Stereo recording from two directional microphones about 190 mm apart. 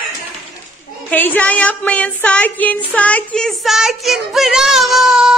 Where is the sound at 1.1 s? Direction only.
10° left (ahead or behind).